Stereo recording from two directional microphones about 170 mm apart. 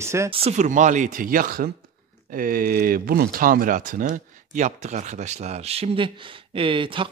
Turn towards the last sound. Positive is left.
turn(degrees=-30)  # may be behind; listen again after turning